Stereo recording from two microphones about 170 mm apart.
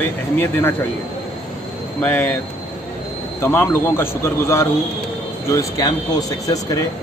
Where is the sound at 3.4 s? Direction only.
15° left (ahead or behind).